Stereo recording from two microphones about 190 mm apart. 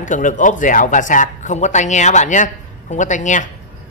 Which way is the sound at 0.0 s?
40° left (ahead or behind).